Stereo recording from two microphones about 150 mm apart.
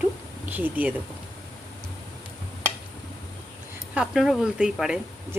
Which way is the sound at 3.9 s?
5° right (ahead or behind).